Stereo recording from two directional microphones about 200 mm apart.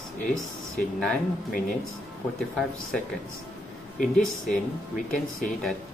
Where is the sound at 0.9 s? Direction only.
5° left (ahead or behind).